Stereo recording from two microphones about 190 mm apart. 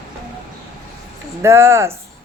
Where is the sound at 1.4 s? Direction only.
15° right (ahead or behind).